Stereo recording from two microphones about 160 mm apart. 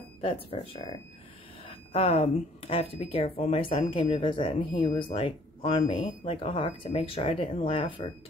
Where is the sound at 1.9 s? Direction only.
40° left (ahead or behind).